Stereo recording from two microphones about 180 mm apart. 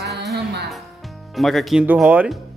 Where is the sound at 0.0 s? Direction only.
65° right (ahead or behind).